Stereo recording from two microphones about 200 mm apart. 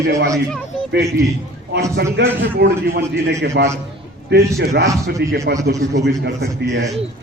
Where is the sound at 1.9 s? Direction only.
55° right (ahead or behind).